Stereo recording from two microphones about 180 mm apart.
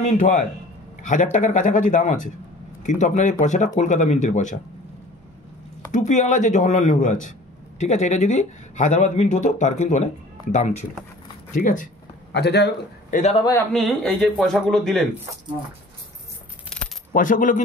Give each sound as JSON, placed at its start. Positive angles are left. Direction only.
{"t": 0.2, "sound": "speech", "side_deg": 45}
{"t": 5.9, "sound": "speech", "side_deg": 40}
{"t": 12.3, "sound": "a man's voice", "side_deg": 70}
{"t": 13.1, "sound": "speech", "side_deg": 40}
{"t": 13.4, "sound": "a man's voice", "side_deg": 15}
{"t": 13.7, "sound": "speech", "side_deg": 0}
{"t": 17.1, "sound": "speech", "side_deg": 45}